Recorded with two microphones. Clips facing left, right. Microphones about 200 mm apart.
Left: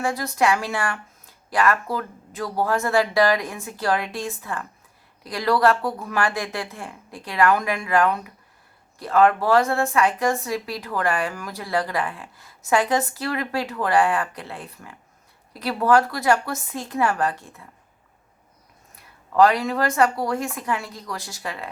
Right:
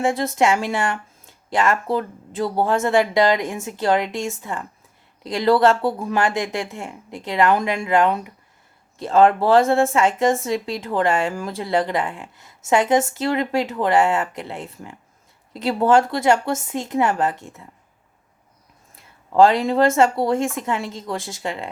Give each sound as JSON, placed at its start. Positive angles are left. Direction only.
{"t": 0.0, "sound": "speech", "side_deg": -25}
{"t": 18.9, "sound": "a sound", "side_deg": -25}
{"t": 20.0, "sound": "speech", "side_deg": -25}